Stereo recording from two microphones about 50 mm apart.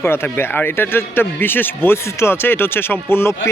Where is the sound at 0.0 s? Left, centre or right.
Left.